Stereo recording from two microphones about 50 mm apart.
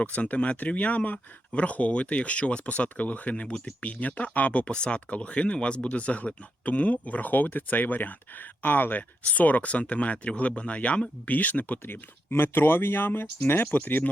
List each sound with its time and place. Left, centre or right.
0.0 s speech: left
12.3 s speech: left